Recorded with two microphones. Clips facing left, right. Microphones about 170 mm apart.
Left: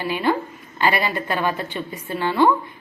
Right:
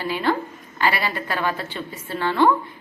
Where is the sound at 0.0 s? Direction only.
15° left (ahead or behind).